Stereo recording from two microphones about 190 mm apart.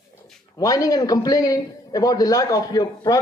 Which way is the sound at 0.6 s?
20° left (ahead or behind).